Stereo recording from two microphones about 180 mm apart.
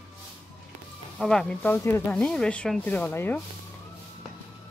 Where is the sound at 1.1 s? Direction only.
5° left (ahead or behind).